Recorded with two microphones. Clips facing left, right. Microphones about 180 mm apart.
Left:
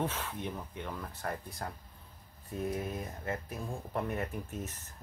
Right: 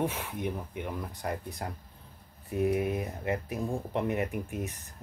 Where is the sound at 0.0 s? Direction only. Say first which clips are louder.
Right 4 dB; 15° right (ahead or behind).